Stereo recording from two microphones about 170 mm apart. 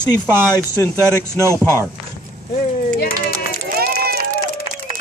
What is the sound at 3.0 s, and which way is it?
Run, 60° left (ahead or behind).